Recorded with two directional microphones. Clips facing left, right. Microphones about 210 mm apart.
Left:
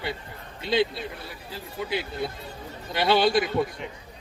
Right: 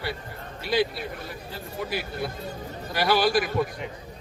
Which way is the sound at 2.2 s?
20° left (ahead or behind).